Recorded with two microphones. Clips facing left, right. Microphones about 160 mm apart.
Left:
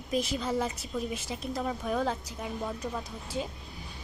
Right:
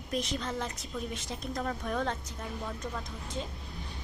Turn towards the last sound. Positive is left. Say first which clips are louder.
# left 3 dB
turn(degrees=10)  # may be behind; listen again after turning